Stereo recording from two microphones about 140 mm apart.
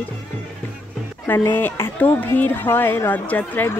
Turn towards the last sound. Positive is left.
turn(degrees=10)  # may be behind; listen again after turning